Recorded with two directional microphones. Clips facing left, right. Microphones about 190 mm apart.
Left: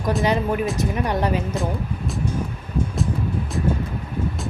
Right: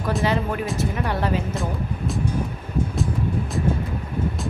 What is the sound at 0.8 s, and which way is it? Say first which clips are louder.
Speech: left 2 dB; 15° left (ahead or behind).